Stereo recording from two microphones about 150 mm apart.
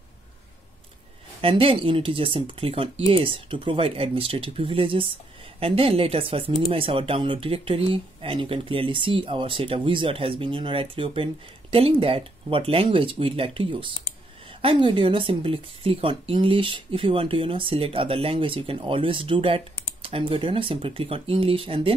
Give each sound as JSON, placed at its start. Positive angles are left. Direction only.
{"t": 1.4, "sound": "speech", "side_deg": -40}